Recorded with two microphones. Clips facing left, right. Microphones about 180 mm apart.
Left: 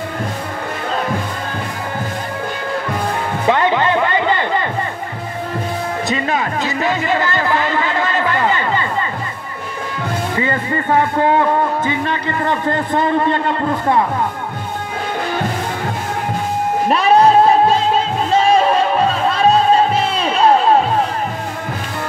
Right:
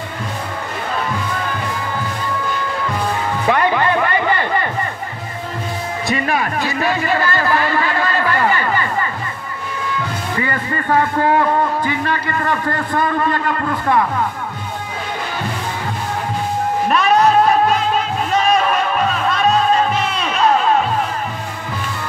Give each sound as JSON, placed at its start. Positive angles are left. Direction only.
{"t": 3.4, "sound": "music", "side_deg": 20}
{"t": 6.0, "sound": "a sound", "side_deg": 20}
{"t": 10.4, "sound": "a man's voice", "side_deg": 20}
{"t": 16.9, "sound": "music", "side_deg": 30}